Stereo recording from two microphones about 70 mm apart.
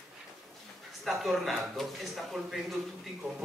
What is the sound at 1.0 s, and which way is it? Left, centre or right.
A man's voice, centre.